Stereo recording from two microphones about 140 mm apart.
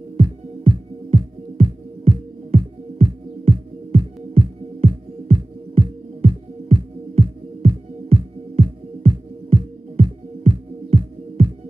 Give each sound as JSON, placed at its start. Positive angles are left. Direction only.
{"t": 0.2, "sound": "music", "side_deg": -40}